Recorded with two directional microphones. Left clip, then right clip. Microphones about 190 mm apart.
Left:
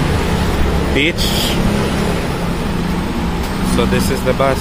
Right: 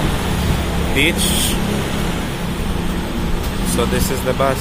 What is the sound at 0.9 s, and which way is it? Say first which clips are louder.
Speech: even; 30° left (ahead or behind).